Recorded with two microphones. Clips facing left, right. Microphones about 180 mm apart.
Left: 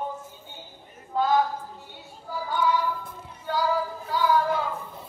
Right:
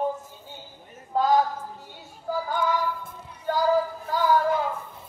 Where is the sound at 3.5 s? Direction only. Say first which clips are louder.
Right 2 dB; 45° right (ahead or behind).